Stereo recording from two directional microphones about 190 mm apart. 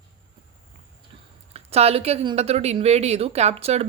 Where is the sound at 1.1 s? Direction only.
30° right (ahead or behind).